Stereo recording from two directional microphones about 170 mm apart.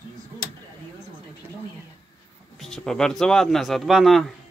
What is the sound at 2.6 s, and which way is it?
Speech, 5° left (ahead or behind).